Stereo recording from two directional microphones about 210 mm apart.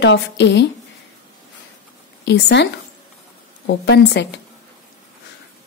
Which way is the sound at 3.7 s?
55° left (ahead or behind).